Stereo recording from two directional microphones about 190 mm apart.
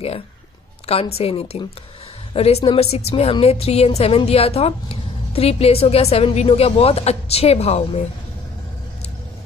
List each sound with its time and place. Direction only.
0.8 s a woman's voice: 30° left (ahead or behind)